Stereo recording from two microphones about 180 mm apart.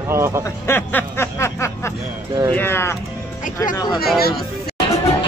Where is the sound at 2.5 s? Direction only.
10° left (ahead or behind).